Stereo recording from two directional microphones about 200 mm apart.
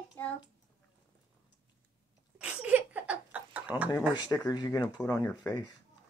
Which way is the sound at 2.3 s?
5° right (ahead or behind).